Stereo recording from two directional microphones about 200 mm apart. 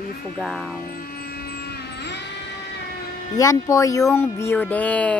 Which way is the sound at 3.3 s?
15° left (ahead or behind).